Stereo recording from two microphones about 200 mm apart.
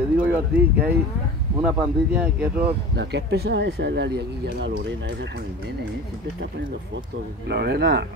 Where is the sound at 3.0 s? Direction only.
60° right (ahead or behind).